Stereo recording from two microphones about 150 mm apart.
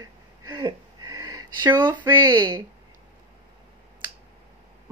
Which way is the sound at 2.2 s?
20° right (ahead or behind).